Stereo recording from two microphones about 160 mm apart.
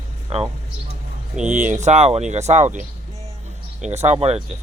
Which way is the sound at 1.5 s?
50° right (ahead or behind).